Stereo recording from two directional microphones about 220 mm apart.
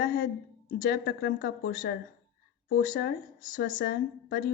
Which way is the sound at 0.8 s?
45° left (ahead or behind).